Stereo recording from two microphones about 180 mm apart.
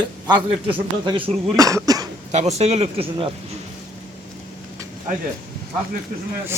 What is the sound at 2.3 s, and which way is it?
Speech, 40° right (ahead or behind).